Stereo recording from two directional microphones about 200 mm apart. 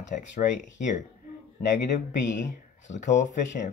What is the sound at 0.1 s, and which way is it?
Speech, 40° left (ahead or behind).